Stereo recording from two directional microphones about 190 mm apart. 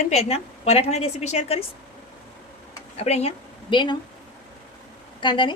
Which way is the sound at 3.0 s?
35° left (ahead or behind).